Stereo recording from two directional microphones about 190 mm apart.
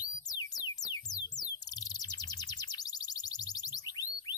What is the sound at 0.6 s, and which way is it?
Music, 20° left (ahead or behind).